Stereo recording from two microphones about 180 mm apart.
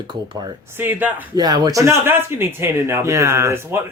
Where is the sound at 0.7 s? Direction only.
10° right (ahead or behind).